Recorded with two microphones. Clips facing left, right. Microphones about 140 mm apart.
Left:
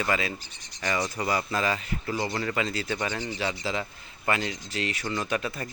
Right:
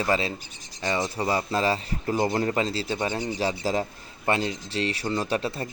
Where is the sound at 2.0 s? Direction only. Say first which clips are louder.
Right 8 dB; 50° right (ahead or behind).